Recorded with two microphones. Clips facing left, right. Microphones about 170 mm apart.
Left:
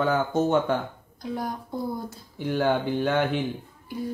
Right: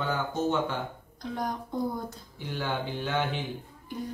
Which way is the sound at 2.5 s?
55° left (ahead or behind).